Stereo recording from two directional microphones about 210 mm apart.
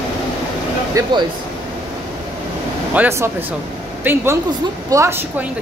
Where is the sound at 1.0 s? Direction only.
15° right (ahead or behind).